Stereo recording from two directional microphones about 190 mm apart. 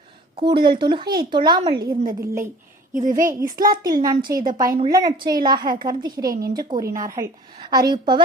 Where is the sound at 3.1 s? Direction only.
45° right (ahead or behind).